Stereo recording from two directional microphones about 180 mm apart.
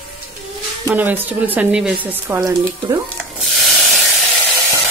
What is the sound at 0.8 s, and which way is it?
Speech, 10° right (ahead or behind).